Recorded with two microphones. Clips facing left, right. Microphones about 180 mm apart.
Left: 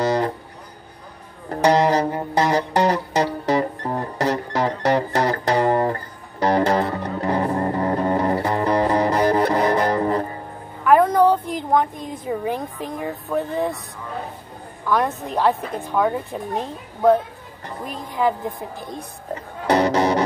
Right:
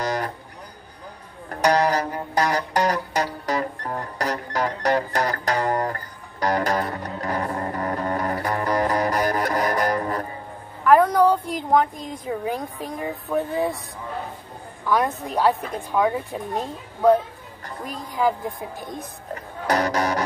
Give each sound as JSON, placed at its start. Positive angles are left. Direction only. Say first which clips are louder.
{"t": 1.5, "sound": "music", "louder": "left 3 dB", "side_deg": 20}
{"t": 10.8, "sound": "a sound", "louder": "left 1 dB", "side_deg": 5}
{"t": 14.9, "sound": "a woman's voice", "louder": "left 1 dB", "side_deg": 0}
{"t": 19.3, "sound": "music", "louder": "left 4 dB", "side_deg": 25}